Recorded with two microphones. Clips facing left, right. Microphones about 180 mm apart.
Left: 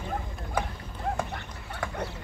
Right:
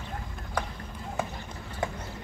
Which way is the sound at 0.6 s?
5° left (ahead or behind).